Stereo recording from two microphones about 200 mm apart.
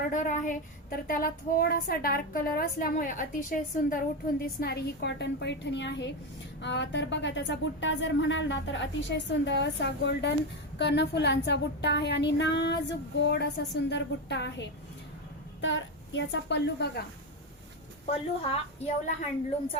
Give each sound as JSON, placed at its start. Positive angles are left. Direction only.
{"t": 0.1, "sound": "a woman's voice", "side_deg": 40}
{"t": 18.0, "sound": "a woman's voice", "side_deg": 30}